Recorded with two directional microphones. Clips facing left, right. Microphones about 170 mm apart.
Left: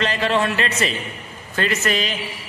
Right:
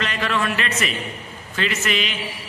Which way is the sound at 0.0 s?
30° left (ahead or behind).